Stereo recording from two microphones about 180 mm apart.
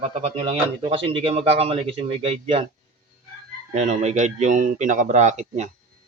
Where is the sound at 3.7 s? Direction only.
40° right (ahead or behind).